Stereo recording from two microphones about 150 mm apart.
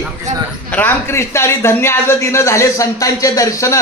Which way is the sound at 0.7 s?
15° left (ahead or behind).